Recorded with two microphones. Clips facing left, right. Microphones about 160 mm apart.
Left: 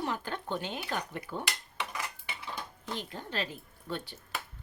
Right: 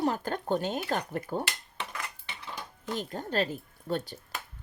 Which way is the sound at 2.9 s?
45° right (ahead or behind).